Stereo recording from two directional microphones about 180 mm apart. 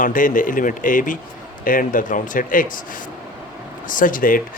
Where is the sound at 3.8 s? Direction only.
50° left (ahead or behind).